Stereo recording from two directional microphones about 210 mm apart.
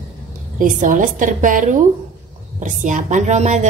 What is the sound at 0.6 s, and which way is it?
Speech, 40° right (ahead or behind).